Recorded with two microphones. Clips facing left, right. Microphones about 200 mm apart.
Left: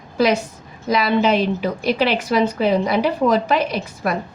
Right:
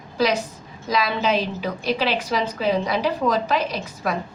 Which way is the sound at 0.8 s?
55° left (ahead or behind).